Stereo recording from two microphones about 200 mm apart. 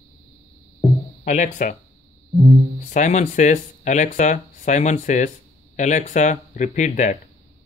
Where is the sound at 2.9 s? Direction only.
35° left (ahead or behind).